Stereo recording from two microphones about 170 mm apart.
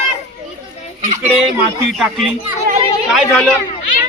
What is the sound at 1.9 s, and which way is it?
A man's voice, centre (ahead or behind).